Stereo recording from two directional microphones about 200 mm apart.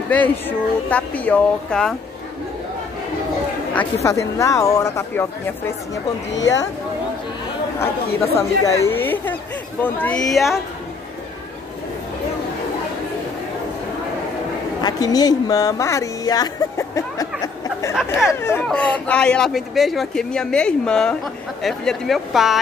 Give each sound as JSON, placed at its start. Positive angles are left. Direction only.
{"t": 0.1, "sound": "speech", "side_deg": 10}
{"t": 3.7, "sound": "speech", "side_deg": 15}
{"t": 6.3, "sound": "speech", "side_deg": 65}
{"t": 7.8, "sound": "speech", "side_deg": 10}
{"t": 14.8, "sound": "speech", "side_deg": 20}
{"t": 18.4, "sound": "speech", "side_deg": 10}